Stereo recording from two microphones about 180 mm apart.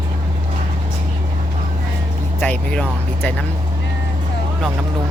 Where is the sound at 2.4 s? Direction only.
10° left (ahead or behind).